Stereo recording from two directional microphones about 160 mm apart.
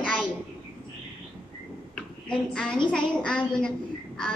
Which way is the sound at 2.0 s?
5° left (ahead or behind).